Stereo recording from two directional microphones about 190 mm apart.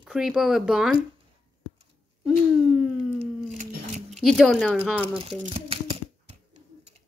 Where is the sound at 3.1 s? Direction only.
40° right (ahead or behind).